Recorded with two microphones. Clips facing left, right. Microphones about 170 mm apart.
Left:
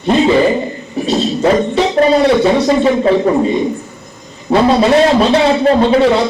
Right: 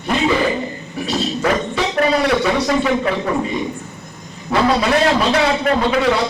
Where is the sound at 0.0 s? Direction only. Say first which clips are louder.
Left 7 dB; 25° left (ahead or behind).